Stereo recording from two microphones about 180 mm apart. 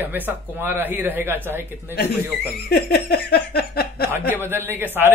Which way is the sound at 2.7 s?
60° left (ahead or behind).